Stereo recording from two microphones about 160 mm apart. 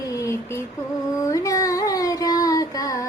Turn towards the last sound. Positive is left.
turn(degrees=20)  # may be behind; listen again after turning